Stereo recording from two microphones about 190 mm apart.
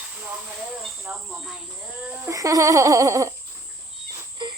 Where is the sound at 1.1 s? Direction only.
10° right (ahead or behind).